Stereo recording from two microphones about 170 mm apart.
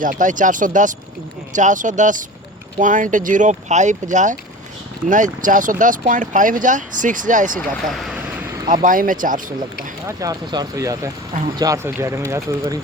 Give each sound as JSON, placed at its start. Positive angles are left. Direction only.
{"t": 0.0, "sound": "speech", "side_deg": -50}
{"t": 7.9, "sound": "vehicle", "side_deg": 0}
{"t": 8.7, "sound": "speech", "side_deg": -50}
{"t": 10.1, "sound": "speech", "side_deg": -20}